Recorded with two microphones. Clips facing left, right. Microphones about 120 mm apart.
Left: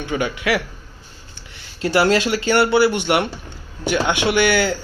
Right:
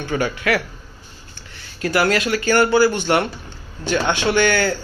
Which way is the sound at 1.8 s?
25° left (ahead or behind).